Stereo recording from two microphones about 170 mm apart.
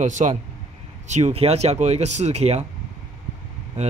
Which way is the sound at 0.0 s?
45° right (ahead or behind).